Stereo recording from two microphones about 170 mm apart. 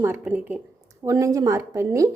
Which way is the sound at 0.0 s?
15° right (ahead or behind).